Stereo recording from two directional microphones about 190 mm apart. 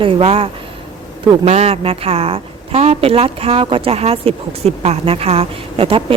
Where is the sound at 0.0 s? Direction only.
30° right (ahead or behind).